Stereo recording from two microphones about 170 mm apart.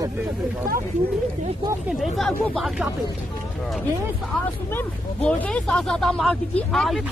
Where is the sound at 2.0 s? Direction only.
5° left (ahead or behind).